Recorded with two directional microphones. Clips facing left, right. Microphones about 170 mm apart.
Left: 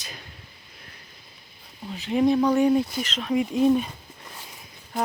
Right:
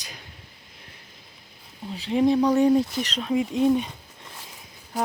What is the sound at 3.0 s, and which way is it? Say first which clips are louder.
Speech: right 1 dB; 35° right (ahead or behind).